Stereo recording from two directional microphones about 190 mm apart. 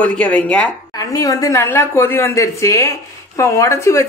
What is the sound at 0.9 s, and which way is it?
Speech, 20° left (ahead or behind).